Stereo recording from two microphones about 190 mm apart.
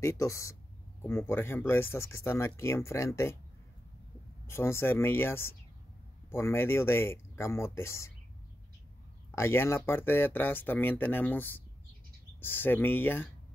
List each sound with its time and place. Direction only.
0.0 s speech: 15° left (ahead or behind)
4.5 s speech: 15° left (ahead or behind)
9.3 s speech: 15° left (ahead or behind)